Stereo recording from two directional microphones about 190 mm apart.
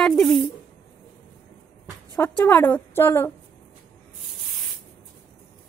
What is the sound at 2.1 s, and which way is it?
A woman's voice, 10° left (ahead or behind).